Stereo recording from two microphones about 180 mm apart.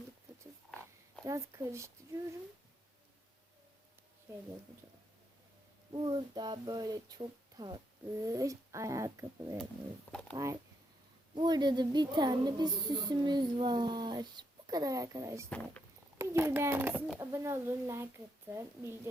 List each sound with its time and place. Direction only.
1.2 s speech: 15° right (ahead or behind)
5.9 s a woman's voice: 25° right (ahead or behind)
15.4 s speech: 10° left (ahead or behind)
16.1 s speech: 15° right (ahead or behind)